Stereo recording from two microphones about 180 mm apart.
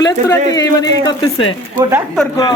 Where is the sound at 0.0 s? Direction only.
20° left (ahead or behind).